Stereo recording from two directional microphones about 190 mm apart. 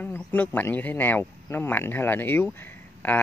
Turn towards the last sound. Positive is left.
turn(degrees=10)  # may be behind; listen again after turning